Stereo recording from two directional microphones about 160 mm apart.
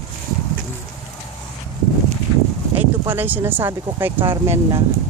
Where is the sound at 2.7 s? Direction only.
10° right (ahead or behind).